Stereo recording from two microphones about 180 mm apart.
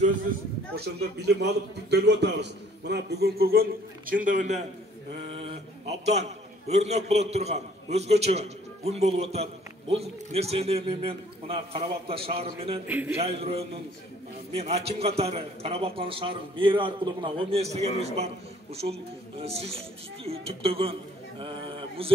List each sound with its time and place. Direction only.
0.7 s a man's voice: 65° right (ahead or behind); by 4.6 s 40° right (ahead or behind)
5.3 s a sound: 35° right (ahead or behind)
6.7 s a man's voice: 40° right (ahead or behind)
12.8 s a man's voice: 10° right (ahead or behind)
13.2 s a man's voice: 35° right (ahead or behind)